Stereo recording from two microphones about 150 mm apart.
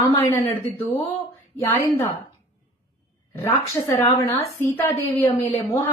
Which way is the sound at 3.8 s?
20° left (ahead or behind).